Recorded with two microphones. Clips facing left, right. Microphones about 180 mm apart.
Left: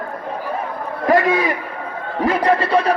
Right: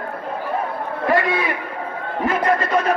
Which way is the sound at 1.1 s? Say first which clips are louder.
Left 4 dB; 40° left (ahead or behind).